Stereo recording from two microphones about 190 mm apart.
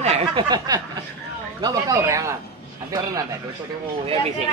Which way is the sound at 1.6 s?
15° right (ahead or behind).